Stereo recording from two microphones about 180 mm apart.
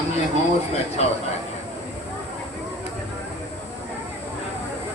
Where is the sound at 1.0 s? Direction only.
35° left (ahead or behind).